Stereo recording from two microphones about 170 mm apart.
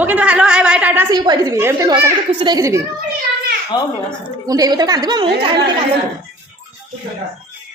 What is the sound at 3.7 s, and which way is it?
Speech, 25° left (ahead or behind).